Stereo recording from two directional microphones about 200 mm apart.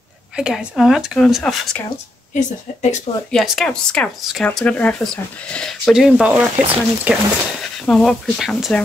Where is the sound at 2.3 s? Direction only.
35° left (ahead or behind).